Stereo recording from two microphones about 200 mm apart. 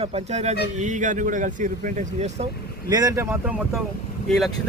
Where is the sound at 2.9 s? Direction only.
15° right (ahead or behind); by 4.5 s centre (ahead or behind).